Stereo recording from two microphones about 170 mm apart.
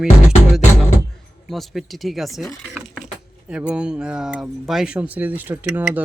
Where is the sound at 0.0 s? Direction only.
5° right (ahead or behind).